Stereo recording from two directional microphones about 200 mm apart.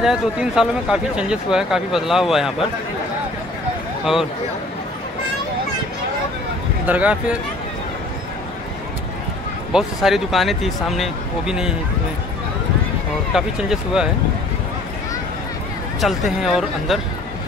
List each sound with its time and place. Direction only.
0.0 s speech: centre (ahead or behind)
4.0 s speech: centre (ahead or behind)
6.9 s speech: 5° right (ahead or behind)
9.7 s speech: centre (ahead or behind)
13.3 s speech: centre (ahead or behind)
16.0 s speech: centre (ahead or behind)